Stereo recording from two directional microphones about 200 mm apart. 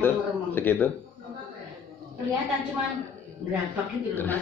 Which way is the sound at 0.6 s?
10° left (ahead or behind).